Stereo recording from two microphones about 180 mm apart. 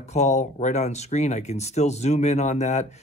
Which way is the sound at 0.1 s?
40° left (ahead or behind).